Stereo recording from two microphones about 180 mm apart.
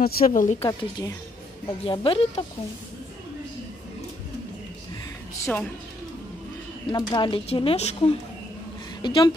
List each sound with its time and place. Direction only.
0.0 s speech: 50° left (ahead or behind)
0.6 s speech: 20° left (ahead or behind)
1.9 s speech: 30° left (ahead or behind)
5.4 s a woman's voice: 10° left (ahead or behind)
6.9 s speech: 20° left (ahead or behind)